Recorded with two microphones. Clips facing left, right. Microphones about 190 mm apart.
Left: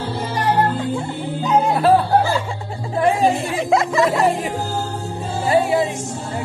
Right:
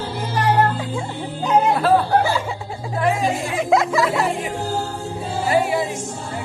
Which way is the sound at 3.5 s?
Centre (ahead or behind).